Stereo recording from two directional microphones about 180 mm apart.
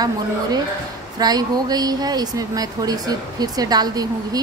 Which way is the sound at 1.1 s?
20° right (ahead or behind).